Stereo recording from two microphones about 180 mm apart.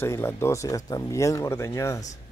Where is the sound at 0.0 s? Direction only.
15° left (ahead or behind).